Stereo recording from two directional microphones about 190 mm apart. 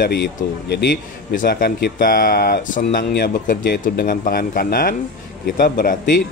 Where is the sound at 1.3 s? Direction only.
50° left (ahead or behind).